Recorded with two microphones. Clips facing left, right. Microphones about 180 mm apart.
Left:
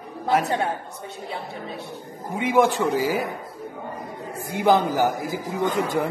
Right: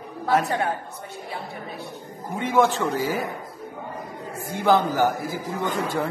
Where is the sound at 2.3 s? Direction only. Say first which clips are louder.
Left 1 dB; 15° left (ahead or behind).